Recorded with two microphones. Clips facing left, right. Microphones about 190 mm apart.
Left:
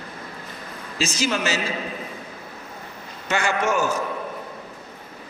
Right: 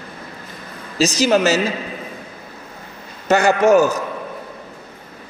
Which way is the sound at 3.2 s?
40° right (ahead or behind).